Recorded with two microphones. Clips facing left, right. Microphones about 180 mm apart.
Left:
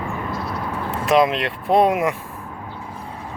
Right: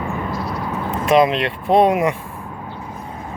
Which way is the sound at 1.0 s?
Centre (ahead or behind).